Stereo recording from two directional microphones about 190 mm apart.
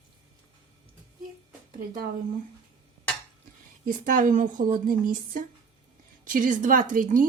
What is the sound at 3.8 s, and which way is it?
Speech, 45° right (ahead or behind).